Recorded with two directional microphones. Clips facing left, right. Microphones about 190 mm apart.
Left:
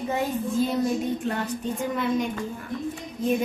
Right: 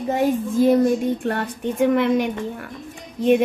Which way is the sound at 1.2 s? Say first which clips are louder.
Right 4 dB; 60° right (ahead or behind).